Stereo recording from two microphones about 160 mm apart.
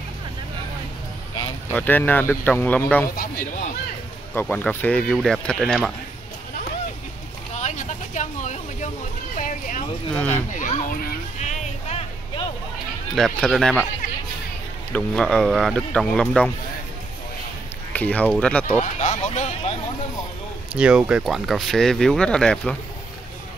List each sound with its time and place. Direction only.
1.7 s speech: 10° left (ahead or behind)
4.4 s speech: 10° left (ahead or behind)
7.5 s a sound: 50° left (ahead or behind)
10.1 s speech: 5° left (ahead or behind)
10.5 s a sound: 50° left (ahead or behind)
13.1 s speech: centre (ahead or behind)
14.9 s speech: 5° left (ahead or behind)
17.9 s speech: 10° left (ahead or behind)
18.8 s speech: 45° left (ahead or behind)
20.7 s speech: 5° right (ahead or behind)